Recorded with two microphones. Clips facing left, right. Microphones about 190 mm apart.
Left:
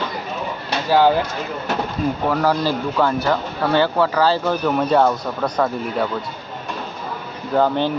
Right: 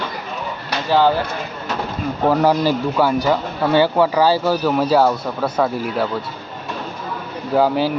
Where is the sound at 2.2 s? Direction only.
20° right (ahead or behind).